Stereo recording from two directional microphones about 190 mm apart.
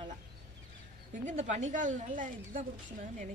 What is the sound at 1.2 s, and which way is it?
Speech, 40° right (ahead or behind).